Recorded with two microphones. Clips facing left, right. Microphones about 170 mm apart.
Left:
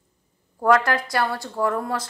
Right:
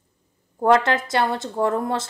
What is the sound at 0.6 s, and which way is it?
A woman's voice, 25° right (ahead or behind).